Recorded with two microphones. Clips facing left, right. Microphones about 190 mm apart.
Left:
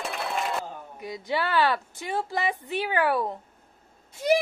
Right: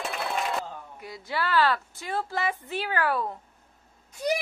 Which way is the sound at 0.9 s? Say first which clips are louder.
Left 4 dB; 20° left (ahead or behind).